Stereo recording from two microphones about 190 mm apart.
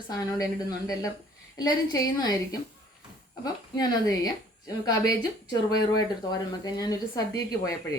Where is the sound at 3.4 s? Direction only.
20° left (ahead or behind).